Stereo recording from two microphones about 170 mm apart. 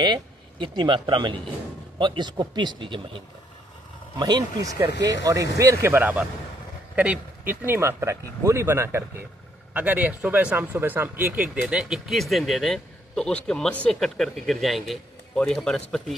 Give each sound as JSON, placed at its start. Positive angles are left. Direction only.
{"t": 0.0, "sound": "speech", "side_deg": -25}
{"t": 4.2, "sound": "speech", "side_deg": -25}